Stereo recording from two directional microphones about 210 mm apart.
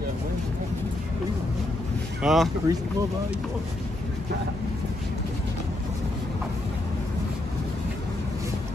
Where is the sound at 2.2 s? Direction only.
Centre (ahead or behind).